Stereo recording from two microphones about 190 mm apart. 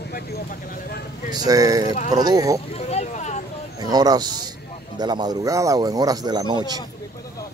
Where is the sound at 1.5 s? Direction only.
20° right (ahead or behind).